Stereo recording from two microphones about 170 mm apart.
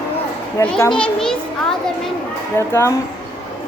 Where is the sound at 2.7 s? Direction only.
15° left (ahead or behind).